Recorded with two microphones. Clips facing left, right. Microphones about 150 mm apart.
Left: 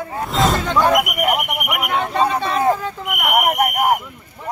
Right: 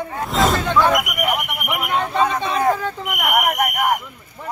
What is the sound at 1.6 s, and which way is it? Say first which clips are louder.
A man's voice: right 3 dB; 10° left (ahead or behind).